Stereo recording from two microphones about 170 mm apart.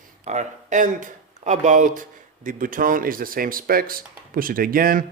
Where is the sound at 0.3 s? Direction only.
45° right (ahead or behind).